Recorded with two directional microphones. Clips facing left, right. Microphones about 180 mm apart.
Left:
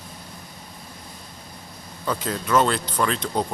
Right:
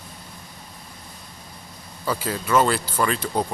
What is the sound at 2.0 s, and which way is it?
Speech, 5° right (ahead or behind).